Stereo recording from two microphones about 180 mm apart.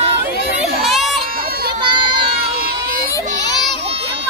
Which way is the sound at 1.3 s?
60° right (ahead or behind).